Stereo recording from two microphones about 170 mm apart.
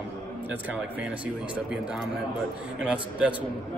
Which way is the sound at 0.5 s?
10° right (ahead or behind).